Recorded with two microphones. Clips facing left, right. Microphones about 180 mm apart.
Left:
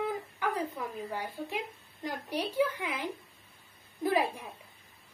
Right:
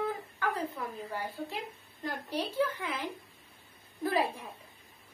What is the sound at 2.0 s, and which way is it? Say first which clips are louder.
A woman's voice: left 1 dB; 10° left (ahead or behind).